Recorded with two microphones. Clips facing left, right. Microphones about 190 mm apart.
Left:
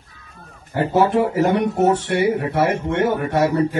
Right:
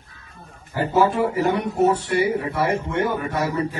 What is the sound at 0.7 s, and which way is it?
Speech, 65° left (ahead or behind).